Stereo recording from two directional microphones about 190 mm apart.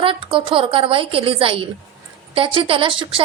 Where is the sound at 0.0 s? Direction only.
30° right (ahead or behind).